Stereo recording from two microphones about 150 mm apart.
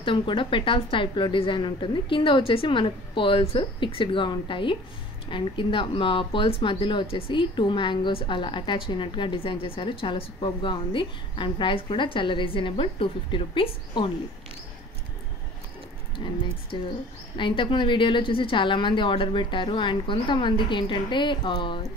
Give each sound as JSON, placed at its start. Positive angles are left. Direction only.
{"t": 0.0, "sound": "speech", "side_deg": 35}
{"t": 16.2, "sound": "speech", "side_deg": 30}